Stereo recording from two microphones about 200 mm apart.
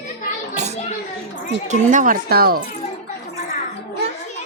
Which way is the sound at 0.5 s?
35° right (ahead or behind).